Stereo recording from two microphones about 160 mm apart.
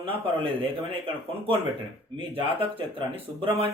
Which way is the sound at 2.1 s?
35° right (ahead or behind).